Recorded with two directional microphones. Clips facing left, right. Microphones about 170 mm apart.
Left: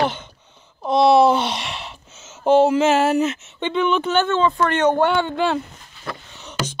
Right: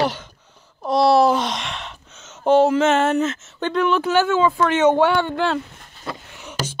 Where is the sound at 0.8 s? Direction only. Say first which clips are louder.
Left 1 dB; 20° left (ahead or behind).